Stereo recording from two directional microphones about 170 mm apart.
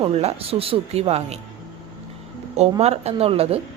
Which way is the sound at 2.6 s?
40° right (ahead or behind).